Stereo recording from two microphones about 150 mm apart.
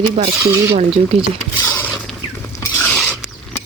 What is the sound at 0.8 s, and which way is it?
Speech, 40° right (ahead or behind).